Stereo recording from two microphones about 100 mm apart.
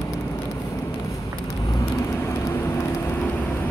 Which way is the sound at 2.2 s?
25° left (ahead or behind).